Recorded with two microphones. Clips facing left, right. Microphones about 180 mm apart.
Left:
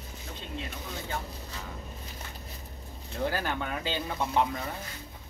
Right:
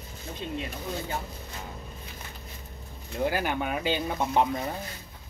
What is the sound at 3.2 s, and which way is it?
Speech, 15° right (ahead or behind).